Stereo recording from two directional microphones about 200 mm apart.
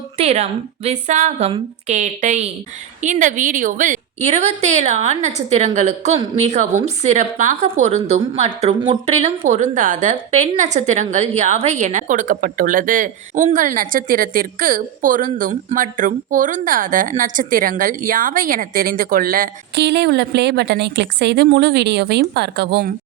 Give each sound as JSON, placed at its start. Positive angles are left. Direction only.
{"t": 0.2, "sound": "a woman's voice", "side_deg": -30}